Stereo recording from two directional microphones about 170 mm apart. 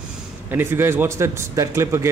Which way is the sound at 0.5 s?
15° right (ahead or behind).